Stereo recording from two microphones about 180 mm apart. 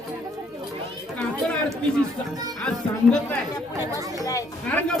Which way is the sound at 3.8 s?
15° right (ahead or behind).